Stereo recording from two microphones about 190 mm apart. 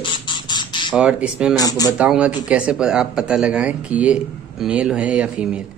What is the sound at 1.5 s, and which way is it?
Speech, 20° left (ahead or behind).